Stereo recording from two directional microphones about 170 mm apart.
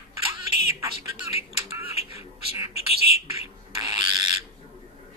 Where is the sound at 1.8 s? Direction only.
35° left (ahead or behind).